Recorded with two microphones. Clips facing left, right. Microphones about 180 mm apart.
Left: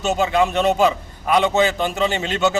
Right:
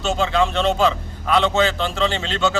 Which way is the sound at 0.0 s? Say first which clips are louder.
Left 1 dB; 15° left (ahead or behind).